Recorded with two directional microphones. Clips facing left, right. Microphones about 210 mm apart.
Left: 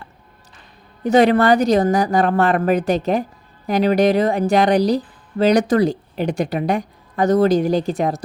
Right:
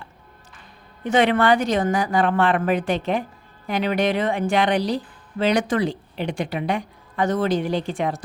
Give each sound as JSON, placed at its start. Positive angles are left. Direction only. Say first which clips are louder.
{"t": 1.0, "sound": "a woman's voice", "louder": "left 5 dB", "side_deg": 35}